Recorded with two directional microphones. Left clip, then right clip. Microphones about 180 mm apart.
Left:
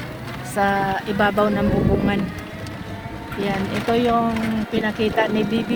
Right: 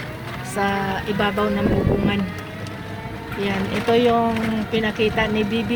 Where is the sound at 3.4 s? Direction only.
5° left (ahead or behind).